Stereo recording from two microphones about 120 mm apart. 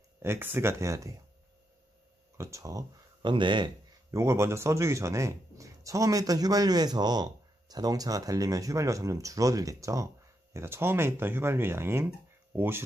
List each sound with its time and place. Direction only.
0.2 s speech: 15° right (ahead or behind)
2.3 s speech: 25° right (ahead or behind); by 3.7 s 40° right (ahead or behind)
4.1 s speech: 25° right (ahead or behind)